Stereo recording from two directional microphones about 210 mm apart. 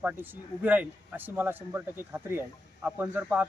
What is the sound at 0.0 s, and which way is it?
A man's voice, 10° right (ahead or behind).